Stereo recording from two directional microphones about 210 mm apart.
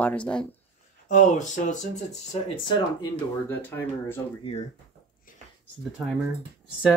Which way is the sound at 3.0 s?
10° left (ahead or behind).